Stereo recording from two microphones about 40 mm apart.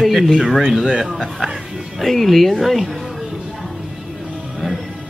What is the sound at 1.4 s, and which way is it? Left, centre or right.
Music, centre.